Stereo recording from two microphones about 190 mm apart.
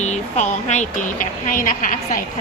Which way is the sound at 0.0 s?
40° left (ahead or behind).